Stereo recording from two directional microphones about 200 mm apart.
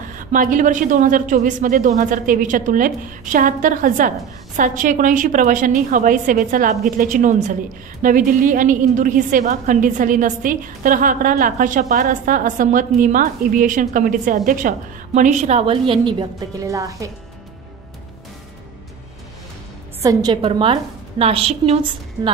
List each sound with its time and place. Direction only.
0.1 s a woman's voice: 40° right (ahead or behind); by 17.1 s 15° right (ahead or behind)
20.0 s a woman's voice: 20° right (ahead or behind)